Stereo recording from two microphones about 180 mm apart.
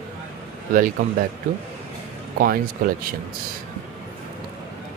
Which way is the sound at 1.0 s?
45° right (ahead or behind).